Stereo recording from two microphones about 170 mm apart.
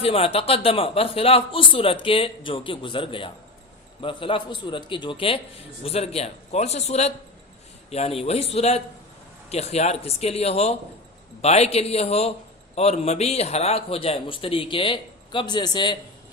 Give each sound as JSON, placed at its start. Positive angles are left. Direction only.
{"t": 0.0, "sound": "a man's voice", "side_deg": 35}